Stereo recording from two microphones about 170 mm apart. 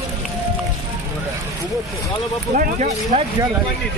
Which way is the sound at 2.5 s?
50° right (ahead or behind).